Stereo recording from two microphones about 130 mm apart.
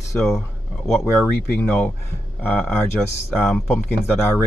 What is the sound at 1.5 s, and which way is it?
Speech, 10° left (ahead or behind).